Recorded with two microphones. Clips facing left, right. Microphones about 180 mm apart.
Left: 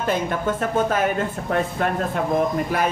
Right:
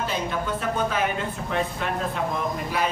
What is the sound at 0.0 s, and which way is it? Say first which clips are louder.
Speech: left 5 dB; 50° left (ahead or behind).